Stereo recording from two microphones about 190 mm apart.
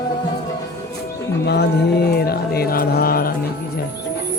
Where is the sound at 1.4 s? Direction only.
60° left (ahead or behind).